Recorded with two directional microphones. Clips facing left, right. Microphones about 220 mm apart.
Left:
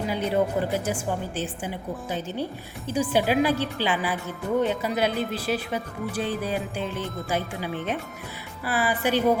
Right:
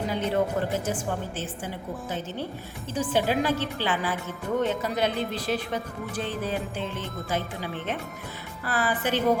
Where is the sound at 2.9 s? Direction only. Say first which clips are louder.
Left 2 dB; 10° left (ahead or behind).